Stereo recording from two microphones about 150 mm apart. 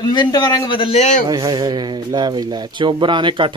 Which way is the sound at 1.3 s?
25° right (ahead or behind).